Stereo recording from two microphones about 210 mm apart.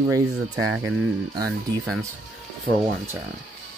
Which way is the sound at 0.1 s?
15° right (ahead or behind).